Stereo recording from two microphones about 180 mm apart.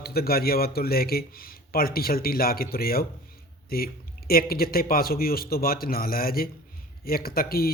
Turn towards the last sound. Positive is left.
turn(degrees=55)  # may be behind; listen again after turning